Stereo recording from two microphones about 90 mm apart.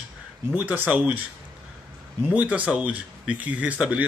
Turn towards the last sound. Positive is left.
turn(degrees=-10)  # may be behind; listen again after turning